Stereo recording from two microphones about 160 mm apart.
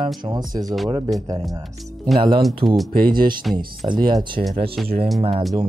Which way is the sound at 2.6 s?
35° right (ahead or behind).